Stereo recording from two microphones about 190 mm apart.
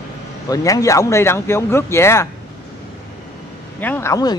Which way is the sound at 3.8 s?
10° left (ahead or behind).